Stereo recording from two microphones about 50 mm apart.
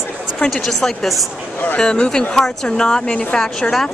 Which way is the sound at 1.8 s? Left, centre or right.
Centre.